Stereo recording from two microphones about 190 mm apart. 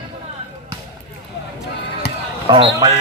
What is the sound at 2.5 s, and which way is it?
Speech, 25° right (ahead or behind).